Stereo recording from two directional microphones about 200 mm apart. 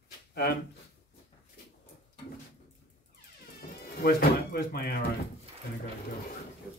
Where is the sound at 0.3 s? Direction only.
55° left (ahead or behind).